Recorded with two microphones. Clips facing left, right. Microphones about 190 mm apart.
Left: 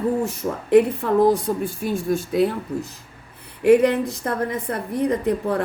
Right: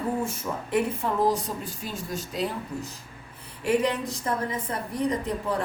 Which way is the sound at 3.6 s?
60° left (ahead or behind).